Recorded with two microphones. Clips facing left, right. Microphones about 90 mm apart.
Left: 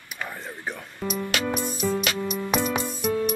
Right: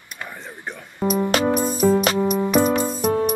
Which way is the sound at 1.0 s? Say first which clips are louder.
Right 8 dB; 50° right (ahead or behind).